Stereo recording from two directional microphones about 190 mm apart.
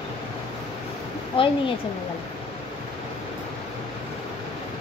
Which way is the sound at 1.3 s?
30° left (ahead or behind).